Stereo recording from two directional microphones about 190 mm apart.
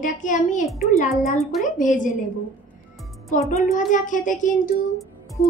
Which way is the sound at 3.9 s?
45° left (ahead or behind).